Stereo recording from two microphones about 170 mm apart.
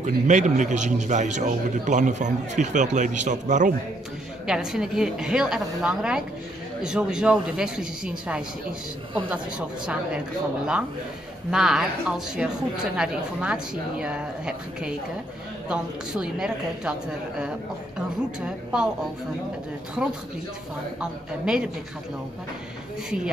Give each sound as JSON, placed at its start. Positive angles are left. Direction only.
{"t": 0.0, "sound": "a man's voice", "side_deg": -45}
{"t": 4.5, "sound": "a woman's voice", "side_deg": -5}
{"t": 11.5, "sound": "a woman's voice", "side_deg": -5}
{"t": 17.9, "sound": "a woman's voice", "side_deg": -5}
{"t": 21.0, "sound": "a woman's voice", "side_deg": -5}
{"t": 23.0, "sound": "a woman's voice", "side_deg": -5}